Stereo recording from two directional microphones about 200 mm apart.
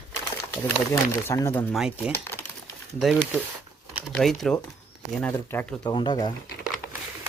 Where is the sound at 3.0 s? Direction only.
Centre (ahead or behind).